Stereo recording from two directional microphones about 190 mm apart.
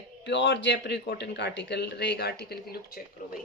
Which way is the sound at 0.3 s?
65° left (ahead or behind).